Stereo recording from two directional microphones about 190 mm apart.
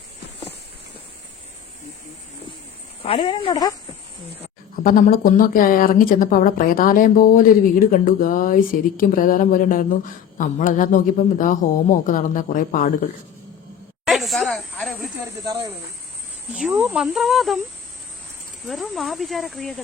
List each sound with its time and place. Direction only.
3.0 s speech: 30° left (ahead or behind)
4.8 s speech: 45° left (ahead or behind)
14.0 s snake: centre (ahead or behind)
16.6 s speech: 5° right (ahead or behind)
18.6 s speech: centre (ahead or behind)